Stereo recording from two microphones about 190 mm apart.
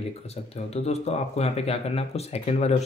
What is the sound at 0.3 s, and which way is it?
Speech, 35° left (ahead or behind).